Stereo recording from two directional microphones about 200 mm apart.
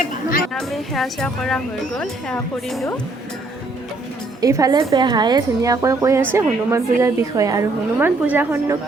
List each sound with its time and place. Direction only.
0.5 s speech: centre (ahead or behind)
4.4 s a woman's voice: 15° right (ahead or behind)